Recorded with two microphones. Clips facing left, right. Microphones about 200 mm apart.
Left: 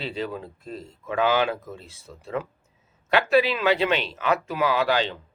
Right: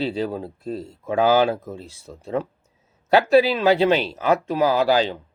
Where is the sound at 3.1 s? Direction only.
35° right (ahead or behind).